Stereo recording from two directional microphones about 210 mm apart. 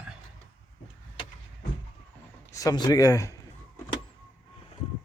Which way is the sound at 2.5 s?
20° left (ahead or behind).